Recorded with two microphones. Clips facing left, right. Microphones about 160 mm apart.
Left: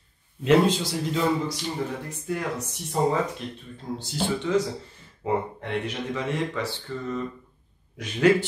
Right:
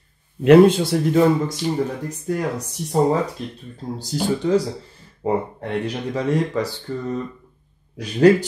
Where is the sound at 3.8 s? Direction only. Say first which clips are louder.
Right 5 dB; 40° right (ahead or behind).